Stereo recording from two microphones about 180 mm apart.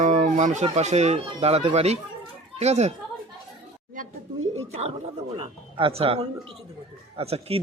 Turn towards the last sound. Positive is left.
turn(degrees=-35)  # may be behind; listen again after turning